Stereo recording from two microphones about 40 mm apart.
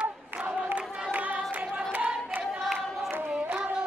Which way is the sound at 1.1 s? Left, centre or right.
Right.